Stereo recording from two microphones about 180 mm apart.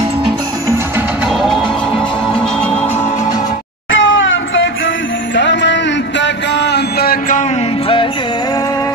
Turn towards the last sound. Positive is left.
turn(degrees=55)  # may be behind; listen again after turning